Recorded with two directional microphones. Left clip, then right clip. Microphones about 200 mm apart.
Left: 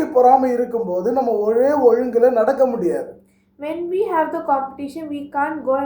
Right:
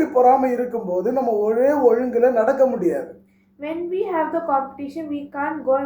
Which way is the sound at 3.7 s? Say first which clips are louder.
Left 3 dB; 15° left (ahead or behind).